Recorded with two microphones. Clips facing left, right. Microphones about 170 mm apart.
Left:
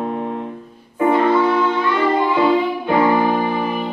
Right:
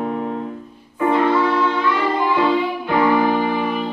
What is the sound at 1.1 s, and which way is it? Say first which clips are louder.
Music: left 1 dB; 5° left (ahead or behind).